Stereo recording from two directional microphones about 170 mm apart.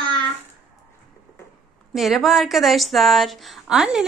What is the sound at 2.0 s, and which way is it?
A woman's voice, centre (ahead or behind).